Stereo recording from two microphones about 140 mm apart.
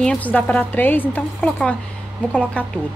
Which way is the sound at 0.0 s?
10° left (ahead or behind).